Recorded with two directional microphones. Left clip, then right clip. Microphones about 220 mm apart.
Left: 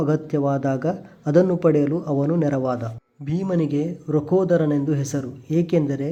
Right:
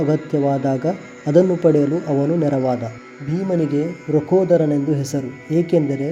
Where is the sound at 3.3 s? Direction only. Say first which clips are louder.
Right 3 dB; 15° right (ahead or behind).